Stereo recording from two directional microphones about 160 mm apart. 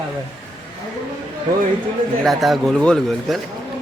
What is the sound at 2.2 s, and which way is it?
A man's voice, centre (ahead or behind).